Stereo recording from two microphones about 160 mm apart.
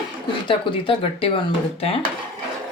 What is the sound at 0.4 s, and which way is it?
Speech, 30° left (ahead or behind).